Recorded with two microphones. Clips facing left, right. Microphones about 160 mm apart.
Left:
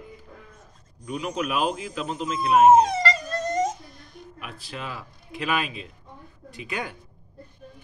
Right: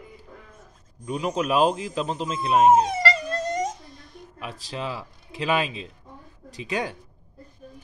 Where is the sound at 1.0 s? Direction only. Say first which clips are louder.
Right 3 dB; 30° right (ahead or behind).